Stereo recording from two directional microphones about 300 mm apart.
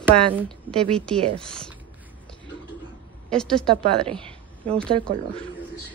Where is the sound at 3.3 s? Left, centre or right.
Centre.